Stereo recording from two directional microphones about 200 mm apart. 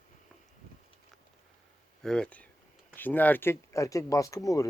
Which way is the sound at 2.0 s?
5° left (ahead or behind).